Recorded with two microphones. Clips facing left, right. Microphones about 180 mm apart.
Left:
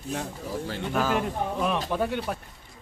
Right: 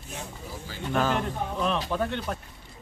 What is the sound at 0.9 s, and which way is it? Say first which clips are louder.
A man's voice: right 1 dB; 5° left (ahead or behind).